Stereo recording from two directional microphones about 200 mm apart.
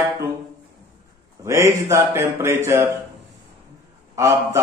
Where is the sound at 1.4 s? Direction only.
15° right (ahead or behind).